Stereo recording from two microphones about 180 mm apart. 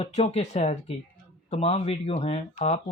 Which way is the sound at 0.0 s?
35° left (ahead or behind).